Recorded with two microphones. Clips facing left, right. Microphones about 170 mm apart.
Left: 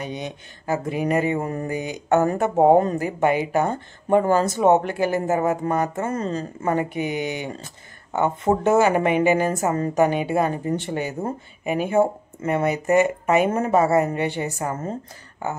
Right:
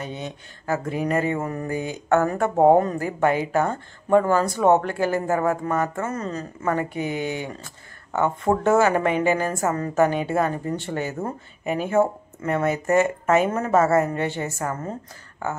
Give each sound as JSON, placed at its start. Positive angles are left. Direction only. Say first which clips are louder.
{"t": 0.0, "sound": "speech", "louder": "left 2 dB", "side_deg": 15}
{"t": 6.0, "sound": "speech", "louder": "left 3 dB", "side_deg": 30}